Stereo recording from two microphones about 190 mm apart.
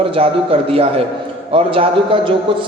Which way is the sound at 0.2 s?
30° right (ahead or behind).